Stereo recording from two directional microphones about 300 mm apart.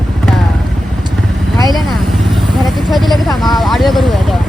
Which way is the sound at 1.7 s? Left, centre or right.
Centre.